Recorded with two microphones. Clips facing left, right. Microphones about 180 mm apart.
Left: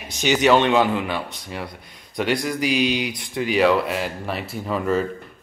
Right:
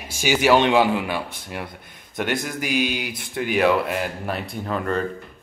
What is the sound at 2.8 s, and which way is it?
Speech, 5° right (ahead or behind).